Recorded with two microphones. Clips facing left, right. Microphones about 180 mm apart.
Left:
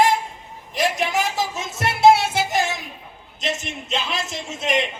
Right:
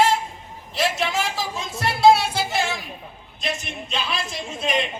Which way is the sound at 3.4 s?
20° left (ahead or behind).